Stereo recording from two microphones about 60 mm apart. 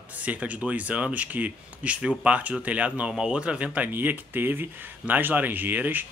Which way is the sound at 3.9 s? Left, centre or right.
Right.